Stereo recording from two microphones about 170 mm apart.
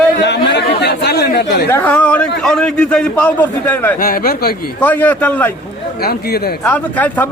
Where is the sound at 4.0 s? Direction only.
65° left (ahead or behind).